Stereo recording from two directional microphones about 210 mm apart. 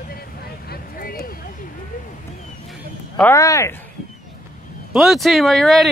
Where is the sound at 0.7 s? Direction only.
45° left (ahead or behind).